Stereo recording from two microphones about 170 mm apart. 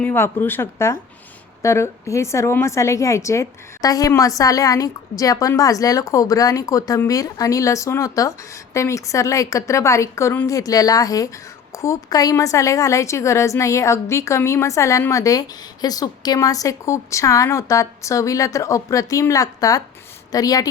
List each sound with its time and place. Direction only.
0.0 s a woman's voice: 10° left (ahead or behind)